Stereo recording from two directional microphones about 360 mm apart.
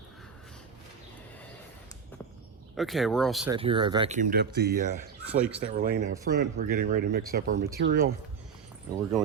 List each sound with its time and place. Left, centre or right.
2.7 s speech: centre
3.5 s speech: centre
5.2 s speech: centre
5.5 s speech: right